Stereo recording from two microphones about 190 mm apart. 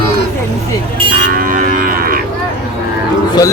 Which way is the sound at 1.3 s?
45° right (ahead or behind).